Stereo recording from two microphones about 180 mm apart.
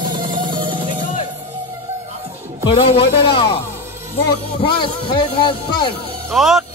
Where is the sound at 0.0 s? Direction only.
25° right (ahead or behind).